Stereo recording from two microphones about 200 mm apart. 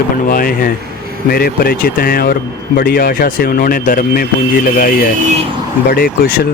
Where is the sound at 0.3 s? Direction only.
45° left (ahead or behind).